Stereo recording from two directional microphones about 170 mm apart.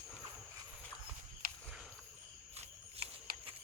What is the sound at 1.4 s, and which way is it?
Walk, 60° right (ahead or behind).